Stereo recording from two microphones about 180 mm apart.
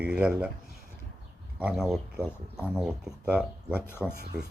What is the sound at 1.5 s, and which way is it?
Speech, 5° right (ahead or behind).